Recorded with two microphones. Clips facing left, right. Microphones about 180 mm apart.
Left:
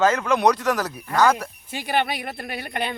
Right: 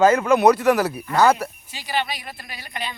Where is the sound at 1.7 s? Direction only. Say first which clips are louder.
Left 4 dB; 55° left (ahead or behind).